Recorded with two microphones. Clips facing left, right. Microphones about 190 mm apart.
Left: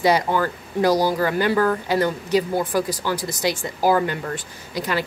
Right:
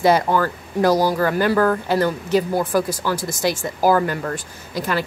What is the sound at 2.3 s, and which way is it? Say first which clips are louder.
A woman's voice: right 2 dB; 45° right (ahead or behind).